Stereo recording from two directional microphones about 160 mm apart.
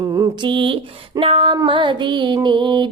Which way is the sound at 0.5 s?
30° right (ahead or behind).